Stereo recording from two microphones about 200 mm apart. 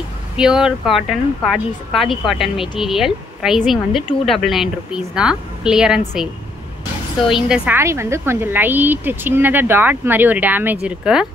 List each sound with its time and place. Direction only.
0.4 s speech: 5° right (ahead or behind)
7.4 s a woman's voice: 5° right (ahead or behind)